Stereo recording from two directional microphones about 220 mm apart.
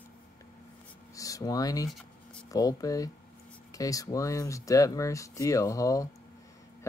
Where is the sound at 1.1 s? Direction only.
15° left (ahead or behind).